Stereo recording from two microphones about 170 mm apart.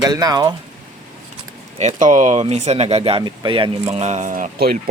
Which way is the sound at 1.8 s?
45° right (ahead or behind).